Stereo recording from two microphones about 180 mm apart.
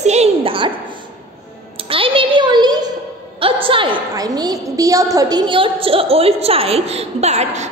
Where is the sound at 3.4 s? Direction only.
30° right (ahead or behind).